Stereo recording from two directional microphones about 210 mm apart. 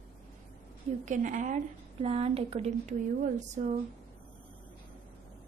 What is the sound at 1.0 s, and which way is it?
A woman's voice, 35° right (ahead or behind).